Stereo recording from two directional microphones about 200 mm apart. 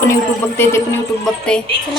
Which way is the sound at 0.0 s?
10° left (ahead or behind).